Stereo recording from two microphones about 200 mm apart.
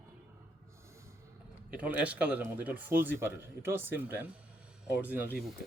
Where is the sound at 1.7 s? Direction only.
5° right (ahead or behind).